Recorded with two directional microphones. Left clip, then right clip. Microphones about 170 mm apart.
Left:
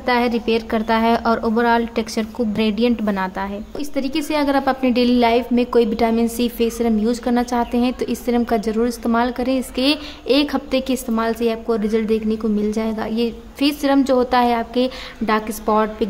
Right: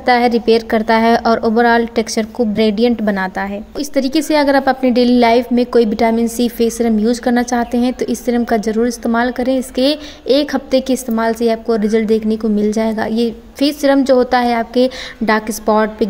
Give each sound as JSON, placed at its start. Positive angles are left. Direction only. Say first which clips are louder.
{"t": 0.0, "sound": "a woman's voice", "louder": "right 6 dB", "side_deg": -20}